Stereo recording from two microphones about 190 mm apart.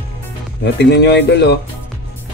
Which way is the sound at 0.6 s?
65° left (ahead or behind).